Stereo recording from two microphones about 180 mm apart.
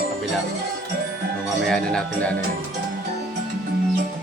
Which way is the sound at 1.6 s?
5° left (ahead or behind).